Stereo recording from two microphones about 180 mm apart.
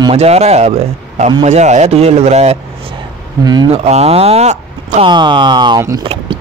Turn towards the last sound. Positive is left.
turn(degrees=-20)  # may be behind; listen again after turning